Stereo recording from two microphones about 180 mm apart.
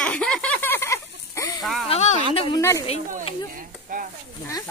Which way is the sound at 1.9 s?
40° left (ahead or behind).